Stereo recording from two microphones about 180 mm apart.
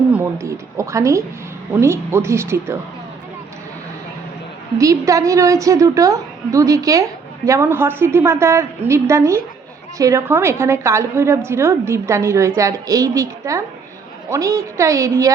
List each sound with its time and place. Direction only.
0.1 s a woman's voice: 15° right (ahead or behind)
4.8 s a woman's voice: 20° right (ahead or behind)